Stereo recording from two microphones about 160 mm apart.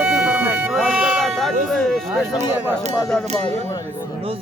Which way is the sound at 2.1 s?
15° right (ahead or behind).